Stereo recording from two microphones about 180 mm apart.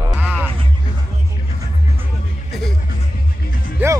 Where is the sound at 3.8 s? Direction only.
10° right (ahead or behind).